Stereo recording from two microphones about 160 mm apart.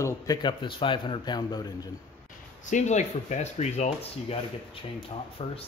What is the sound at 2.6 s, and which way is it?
Speech, 50° left (ahead or behind).